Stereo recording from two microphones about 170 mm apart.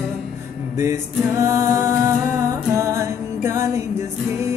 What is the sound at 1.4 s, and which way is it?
Music, 15° right (ahead or behind).